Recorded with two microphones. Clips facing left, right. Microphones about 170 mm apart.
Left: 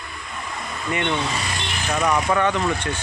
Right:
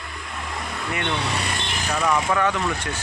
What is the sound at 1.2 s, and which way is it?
Speech, 60° right (ahead or behind).